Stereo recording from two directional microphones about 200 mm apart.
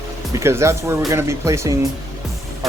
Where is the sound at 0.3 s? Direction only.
15° right (ahead or behind).